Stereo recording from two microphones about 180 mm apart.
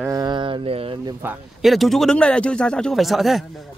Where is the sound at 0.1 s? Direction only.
25° right (ahead or behind).